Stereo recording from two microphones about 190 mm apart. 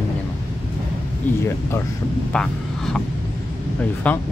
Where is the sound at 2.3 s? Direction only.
5° left (ahead or behind).